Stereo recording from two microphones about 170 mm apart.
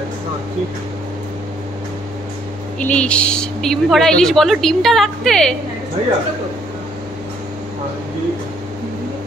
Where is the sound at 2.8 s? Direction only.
5° left (ahead or behind).